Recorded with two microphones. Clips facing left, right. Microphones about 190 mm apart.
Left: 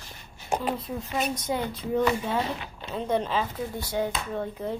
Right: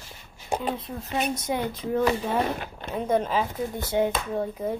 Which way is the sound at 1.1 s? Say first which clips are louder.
Right 2 dB; 10° right (ahead or behind).